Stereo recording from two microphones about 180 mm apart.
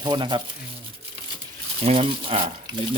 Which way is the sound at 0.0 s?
25° right (ahead or behind).